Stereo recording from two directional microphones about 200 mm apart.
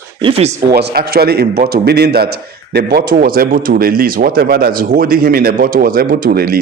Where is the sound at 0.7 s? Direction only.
50° right (ahead or behind).